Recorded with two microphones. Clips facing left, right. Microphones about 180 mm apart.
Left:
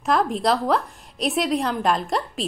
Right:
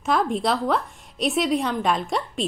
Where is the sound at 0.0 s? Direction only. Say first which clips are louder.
Left 1 dB; centre (ahead or behind).